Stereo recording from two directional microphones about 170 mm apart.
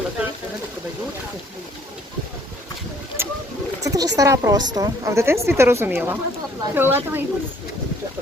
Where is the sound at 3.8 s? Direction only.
20° right (ahead or behind).